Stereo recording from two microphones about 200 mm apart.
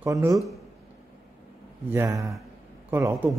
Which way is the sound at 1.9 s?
15° right (ahead or behind).